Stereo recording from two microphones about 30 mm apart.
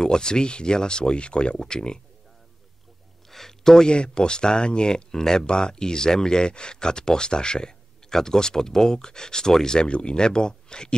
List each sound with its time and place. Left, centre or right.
0.0 s speech: left
3.3 s a sound: centre
3.9 s speech: left
9.8 s speech: left